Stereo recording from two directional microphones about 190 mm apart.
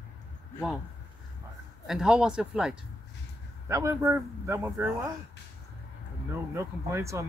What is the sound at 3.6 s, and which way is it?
A man's voice, 15° right (ahead or behind).